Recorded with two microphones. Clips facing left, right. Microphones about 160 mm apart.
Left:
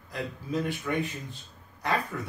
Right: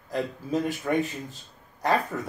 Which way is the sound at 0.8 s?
35° right (ahead or behind).